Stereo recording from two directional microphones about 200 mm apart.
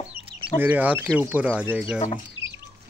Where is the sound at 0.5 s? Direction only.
10° right (ahead or behind).